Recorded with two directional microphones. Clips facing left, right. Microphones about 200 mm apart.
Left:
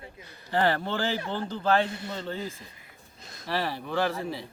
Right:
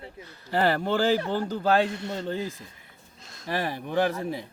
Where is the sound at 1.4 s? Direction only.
10° right (ahead or behind).